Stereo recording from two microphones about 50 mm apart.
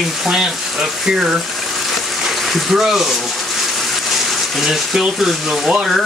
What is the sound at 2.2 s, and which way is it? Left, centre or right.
Speech, centre.